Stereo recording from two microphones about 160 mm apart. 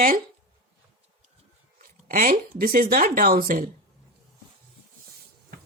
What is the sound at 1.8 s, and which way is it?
Speech, 60° right (ahead or behind).